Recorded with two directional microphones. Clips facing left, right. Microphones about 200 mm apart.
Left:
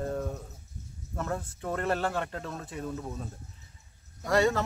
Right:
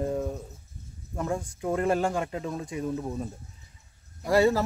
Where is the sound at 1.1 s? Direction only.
10° right (ahead or behind).